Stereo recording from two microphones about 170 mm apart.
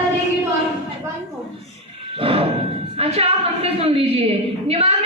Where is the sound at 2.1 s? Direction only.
35° right (ahead or behind).